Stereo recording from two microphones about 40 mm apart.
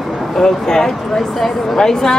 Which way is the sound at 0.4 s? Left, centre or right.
Centre.